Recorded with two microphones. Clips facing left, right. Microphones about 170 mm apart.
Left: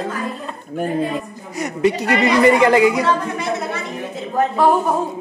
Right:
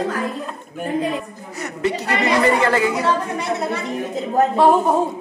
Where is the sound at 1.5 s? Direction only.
15° left (ahead or behind).